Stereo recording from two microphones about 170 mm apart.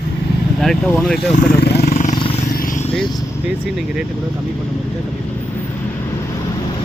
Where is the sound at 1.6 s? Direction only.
75° left (ahead or behind).